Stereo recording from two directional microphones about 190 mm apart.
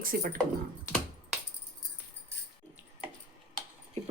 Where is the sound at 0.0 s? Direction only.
50° right (ahead or behind).